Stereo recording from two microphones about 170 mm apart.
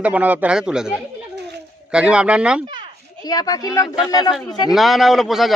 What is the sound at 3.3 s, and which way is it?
Speech, 20° left (ahead or behind).